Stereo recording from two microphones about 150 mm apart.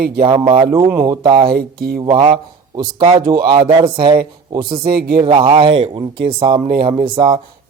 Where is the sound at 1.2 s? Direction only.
35° right (ahead or behind).